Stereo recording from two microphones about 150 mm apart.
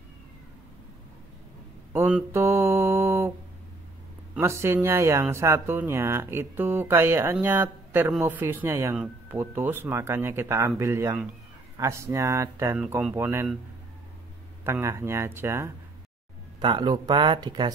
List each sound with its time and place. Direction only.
1.9 s speech: 15° right (ahead or behind)
4.4 s speech: 20° right (ahead or behind)
12.7 s speech: 5° right (ahead or behind)
13.1 s speech: 15° right (ahead or behind)
14.6 s speech: 15° right (ahead or behind)
16.5 s speech: 30° right (ahead or behind)